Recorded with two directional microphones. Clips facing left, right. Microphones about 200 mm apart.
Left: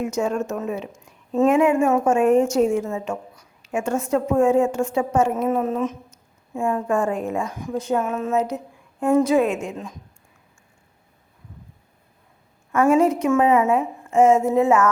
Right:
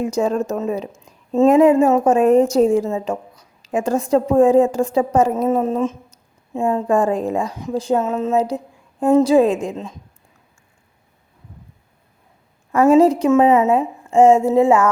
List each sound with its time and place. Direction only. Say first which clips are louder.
0.0 s a woman's voice: right 4 dB; 35° right (ahead or behind)
6.8 s a woman's voice: right 5 dB; 35° right (ahead or behind)
12.9 s a woman's voice: right 6 dB; 35° right (ahead or behind)